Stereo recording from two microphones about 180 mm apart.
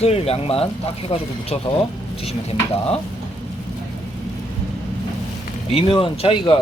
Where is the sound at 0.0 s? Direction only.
35° left (ahead or behind).